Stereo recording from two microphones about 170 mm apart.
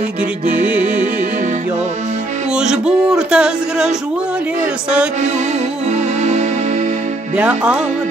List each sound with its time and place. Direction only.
0.5 s music: 50° right (ahead or behind)
2.5 s speech: 5° right (ahead or behind)
7.3 s music: 5° right (ahead or behind)